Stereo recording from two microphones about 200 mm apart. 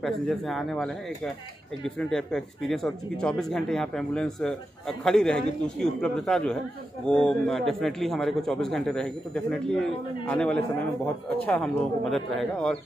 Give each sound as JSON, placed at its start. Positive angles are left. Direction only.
{"t": 0.0, "sound": "a man's voice", "side_deg": 0}